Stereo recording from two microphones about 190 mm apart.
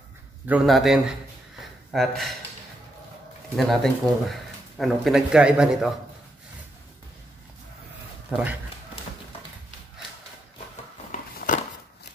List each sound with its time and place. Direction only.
0.5 s speech: centre (ahead or behind)
3.5 s speech: centre (ahead or behind)
8.3 s speech: 5° right (ahead or behind)
11.1 s a sound: 45° left (ahead or behind)